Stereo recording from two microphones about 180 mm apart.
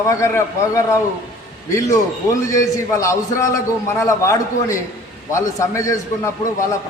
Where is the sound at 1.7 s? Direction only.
15° left (ahead or behind).